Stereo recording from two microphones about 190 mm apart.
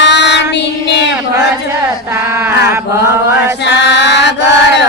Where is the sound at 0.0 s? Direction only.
65° left (ahead or behind).